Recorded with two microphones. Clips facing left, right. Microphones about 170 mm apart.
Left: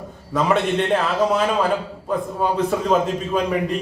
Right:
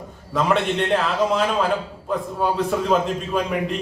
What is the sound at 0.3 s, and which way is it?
A man's voice, centre (ahead or behind).